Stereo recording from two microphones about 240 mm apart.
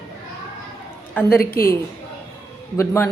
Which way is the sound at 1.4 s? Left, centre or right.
Left.